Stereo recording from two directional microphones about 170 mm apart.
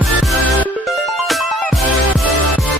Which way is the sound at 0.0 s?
Centre (ahead or behind).